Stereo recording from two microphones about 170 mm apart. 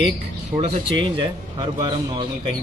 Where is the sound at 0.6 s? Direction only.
30° right (ahead or behind).